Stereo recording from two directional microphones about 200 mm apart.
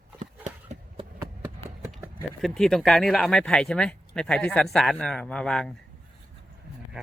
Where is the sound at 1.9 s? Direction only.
Centre (ahead or behind).